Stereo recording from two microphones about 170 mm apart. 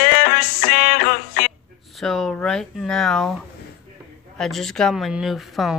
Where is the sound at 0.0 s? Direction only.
60° left (ahead or behind).